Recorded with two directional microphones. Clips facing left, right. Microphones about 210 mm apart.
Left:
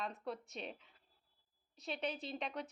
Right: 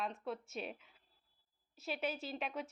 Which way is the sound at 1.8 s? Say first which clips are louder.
Right 1 dB; 5° right (ahead or behind).